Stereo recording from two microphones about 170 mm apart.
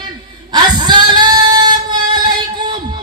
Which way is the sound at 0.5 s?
25° right (ahead or behind).